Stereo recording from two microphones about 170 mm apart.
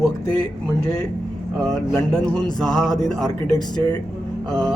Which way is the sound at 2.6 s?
Centre (ahead or behind).